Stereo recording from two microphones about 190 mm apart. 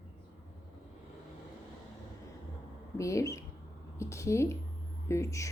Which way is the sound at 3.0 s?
15° left (ahead or behind).